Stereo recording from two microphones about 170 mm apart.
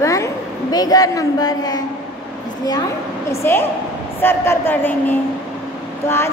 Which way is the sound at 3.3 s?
15° left (ahead or behind).